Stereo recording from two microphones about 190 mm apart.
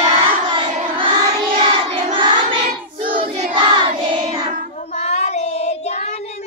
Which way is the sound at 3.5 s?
25° right (ahead or behind).